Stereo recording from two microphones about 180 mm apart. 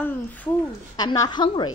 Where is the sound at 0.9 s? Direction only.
20° left (ahead or behind).